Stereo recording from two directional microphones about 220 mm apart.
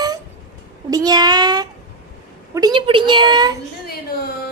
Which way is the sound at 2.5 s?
20° right (ahead or behind).